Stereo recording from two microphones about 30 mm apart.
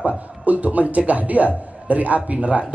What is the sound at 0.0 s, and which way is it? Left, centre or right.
A man's voice, right.